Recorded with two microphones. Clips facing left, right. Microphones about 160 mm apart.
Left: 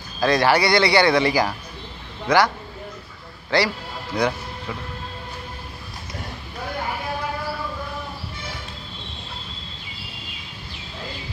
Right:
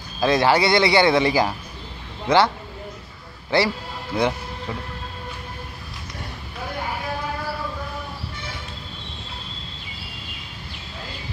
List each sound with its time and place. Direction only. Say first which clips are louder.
0.2 s a man's voice: even; 20° right (ahead or behind)